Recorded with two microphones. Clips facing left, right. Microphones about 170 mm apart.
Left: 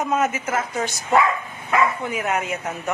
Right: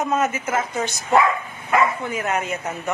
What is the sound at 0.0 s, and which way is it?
A woman's voice, 5° left (ahead or behind).